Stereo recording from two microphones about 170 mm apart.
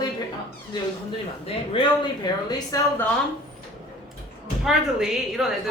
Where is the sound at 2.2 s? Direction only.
25° left (ahead or behind).